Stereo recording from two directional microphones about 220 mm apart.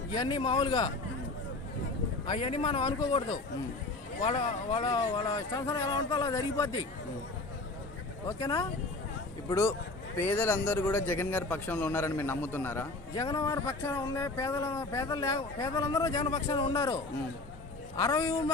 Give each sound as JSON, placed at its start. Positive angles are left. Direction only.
{"t": 0.1, "sound": "speech", "side_deg": 20}
{"t": 2.2, "sound": "speech", "side_deg": 25}
{"t": 8.3, "sound": "speech", "side_deg": 15}